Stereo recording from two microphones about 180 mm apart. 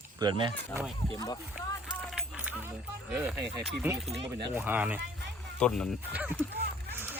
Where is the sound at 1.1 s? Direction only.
20° left (ahead or behind).